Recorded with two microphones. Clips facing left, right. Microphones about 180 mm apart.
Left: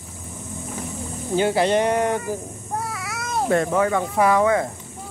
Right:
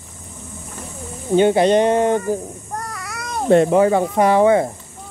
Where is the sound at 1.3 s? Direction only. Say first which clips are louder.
Right 6 dB; 20° right (ahead or behind).